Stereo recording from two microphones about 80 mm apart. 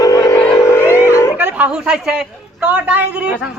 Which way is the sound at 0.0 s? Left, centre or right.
Left.